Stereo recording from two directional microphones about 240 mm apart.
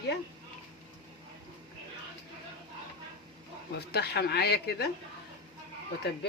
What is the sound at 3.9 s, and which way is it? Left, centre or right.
Speech, left.